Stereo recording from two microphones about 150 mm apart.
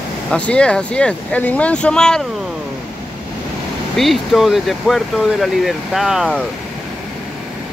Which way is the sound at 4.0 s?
Centre (ahead or behind).